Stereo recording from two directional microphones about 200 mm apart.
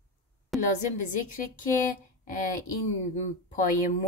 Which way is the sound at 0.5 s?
Centre (ahead or behind).